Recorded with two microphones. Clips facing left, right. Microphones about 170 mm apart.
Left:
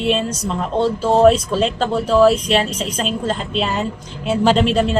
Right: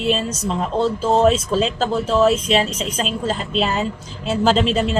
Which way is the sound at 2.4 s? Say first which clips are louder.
Left 1 dB; centre (ahead or behind).